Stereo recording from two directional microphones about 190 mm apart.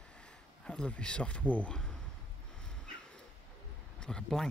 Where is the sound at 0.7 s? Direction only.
5° left (ahead or behind).